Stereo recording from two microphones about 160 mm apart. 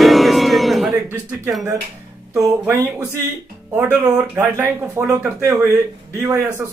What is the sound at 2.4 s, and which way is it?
A man's voice, 15° right (ahead or behind).